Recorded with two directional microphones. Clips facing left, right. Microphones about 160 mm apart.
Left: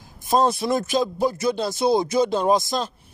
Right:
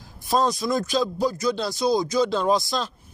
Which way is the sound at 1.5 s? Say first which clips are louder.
Left 3 dB; 50° left (ahead or behind).